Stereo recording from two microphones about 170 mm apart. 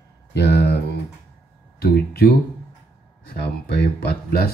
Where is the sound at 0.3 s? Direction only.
75° left (ahead or behind).